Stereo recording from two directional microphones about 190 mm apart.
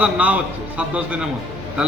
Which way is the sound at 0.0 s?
5° right (ahead or behind).